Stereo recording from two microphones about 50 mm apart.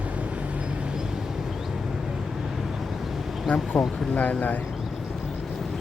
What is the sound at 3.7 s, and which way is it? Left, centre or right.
Speech, centre.